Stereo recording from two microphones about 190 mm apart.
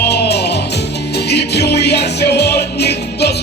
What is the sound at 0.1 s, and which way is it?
Music, 60° left (ahead or behind).